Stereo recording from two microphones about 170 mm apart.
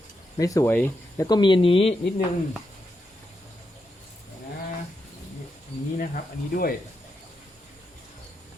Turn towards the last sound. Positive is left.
turn(degrees=60)  # may be behind; listen again after turning